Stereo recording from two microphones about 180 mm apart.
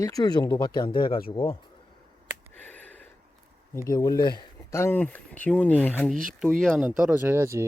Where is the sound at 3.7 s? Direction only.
15° left (ahead or behind).